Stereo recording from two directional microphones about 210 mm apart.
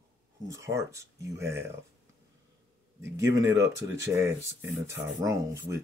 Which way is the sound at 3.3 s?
15° right (ahead or behind).